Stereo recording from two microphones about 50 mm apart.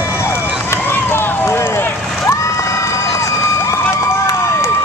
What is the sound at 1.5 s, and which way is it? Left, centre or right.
Run, left.